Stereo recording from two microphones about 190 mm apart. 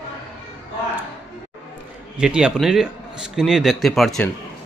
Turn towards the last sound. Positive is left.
turn(degrees=0)  # may be behind; listen again after turning